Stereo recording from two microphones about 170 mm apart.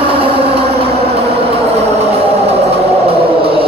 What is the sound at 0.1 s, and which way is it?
Vehicle, 35° right (ahead or behind).